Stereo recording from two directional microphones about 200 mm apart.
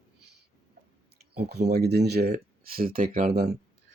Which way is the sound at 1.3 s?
55° right (ahead or behind).